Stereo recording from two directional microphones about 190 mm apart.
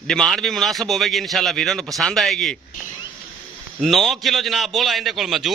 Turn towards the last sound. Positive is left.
turn(degrees=0)  # may be behind; listen again after turning